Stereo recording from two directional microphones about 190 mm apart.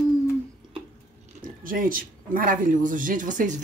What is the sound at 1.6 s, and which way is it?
Speech, 45° right (ahead or behind).